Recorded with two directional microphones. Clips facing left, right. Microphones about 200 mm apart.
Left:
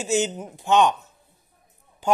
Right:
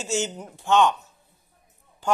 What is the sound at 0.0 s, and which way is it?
Speech, 15° left (ahead or behind).